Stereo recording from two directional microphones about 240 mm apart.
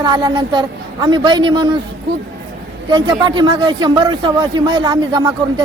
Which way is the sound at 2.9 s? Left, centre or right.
Centre.